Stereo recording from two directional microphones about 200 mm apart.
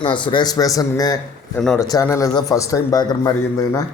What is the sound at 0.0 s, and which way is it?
A man's voice, 25° left (ahead or behind).